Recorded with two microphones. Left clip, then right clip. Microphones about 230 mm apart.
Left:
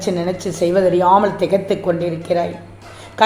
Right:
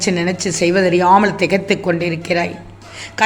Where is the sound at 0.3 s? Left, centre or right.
Right.